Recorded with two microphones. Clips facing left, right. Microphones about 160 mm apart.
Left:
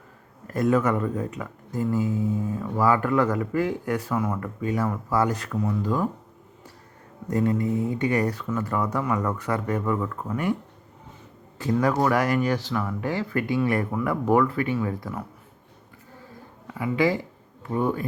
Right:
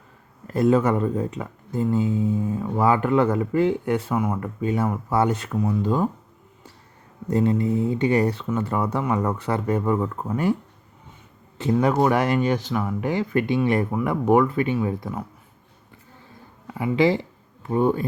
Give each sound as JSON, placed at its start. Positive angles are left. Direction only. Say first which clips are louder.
{"t": 0.4, "sound": "speech", "louder": "right 3 dB", "side_deg": -25}
{"t": 7.3, "sound": "speech", "louder": "right 3 dB", "side_deg": -30}
{"t": 16.7, "sound": "speech", "louder": "right 3 dB", "side_deg": -25}